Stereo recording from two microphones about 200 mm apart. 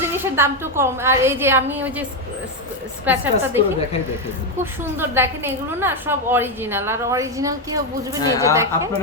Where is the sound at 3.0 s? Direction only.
10° right (ahead or behind).